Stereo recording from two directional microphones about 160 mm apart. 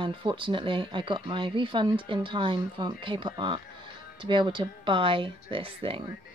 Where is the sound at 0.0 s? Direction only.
30° right (ahead or behind).